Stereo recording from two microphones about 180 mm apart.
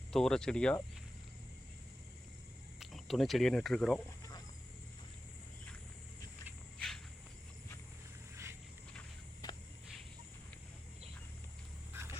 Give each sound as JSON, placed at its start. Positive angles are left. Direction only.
{"t": 0.1, "sound": "speech", "side_deg": 5}
{"t": 2.8, "sound": "speech", "side_deg": 0}
{"t": 6.7, "sound": "cricket", "side_deg": 0}
{"t": 9.4, "sound": "a sound", "side_deg": 20}